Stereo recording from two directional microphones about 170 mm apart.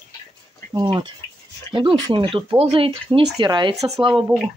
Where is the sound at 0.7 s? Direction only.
25° right (ahead or behind).